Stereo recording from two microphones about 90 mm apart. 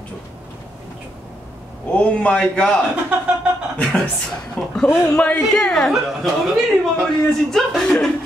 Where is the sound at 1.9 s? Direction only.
15° left (ahead or behind).